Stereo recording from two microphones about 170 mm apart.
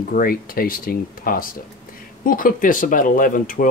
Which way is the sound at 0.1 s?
55° left (ahead or behind).